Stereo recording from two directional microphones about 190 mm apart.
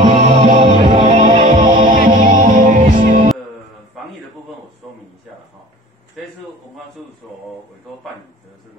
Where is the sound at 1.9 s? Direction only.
40° right (ahead or behind).